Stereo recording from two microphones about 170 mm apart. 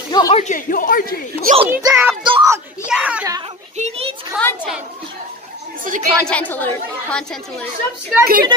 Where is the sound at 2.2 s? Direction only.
25° right (ahead or behind).